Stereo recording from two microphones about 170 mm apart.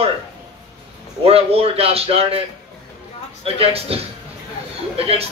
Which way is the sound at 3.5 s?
35° right (ahead or behind).